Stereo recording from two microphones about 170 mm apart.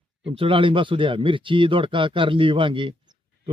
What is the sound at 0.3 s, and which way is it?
A man's voice, 30° right (ahead or behind).